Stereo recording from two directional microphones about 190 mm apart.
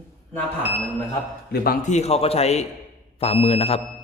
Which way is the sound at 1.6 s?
40° left (ahead or behind).